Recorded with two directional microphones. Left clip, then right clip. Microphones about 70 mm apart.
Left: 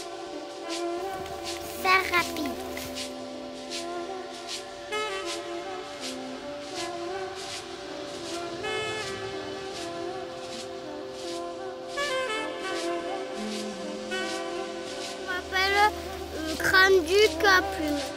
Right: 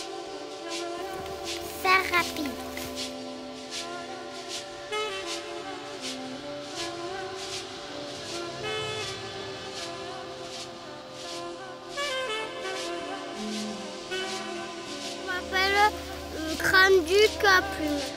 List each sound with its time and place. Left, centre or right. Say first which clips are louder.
1.8 s music: even; centre
4.9 s music: left 1 dB; right
8.6 s music: left 1 dB; right
12.0 s music: left 1 dB; right
14.1 s music: left 1 dB; right
15.2 s music: even; centre
16.5 s a sound: even; centre